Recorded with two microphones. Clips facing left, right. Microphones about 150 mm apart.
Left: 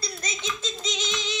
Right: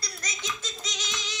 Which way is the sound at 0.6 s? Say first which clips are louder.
Left 7 dB; 25° left (ahead or behind).